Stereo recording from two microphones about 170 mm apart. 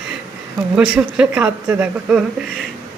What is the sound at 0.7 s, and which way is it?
Speech, 5° right (ahead or behind).